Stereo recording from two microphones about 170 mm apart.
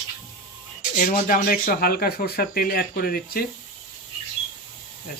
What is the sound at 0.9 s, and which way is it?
Speech, 55° left (ahead or behind).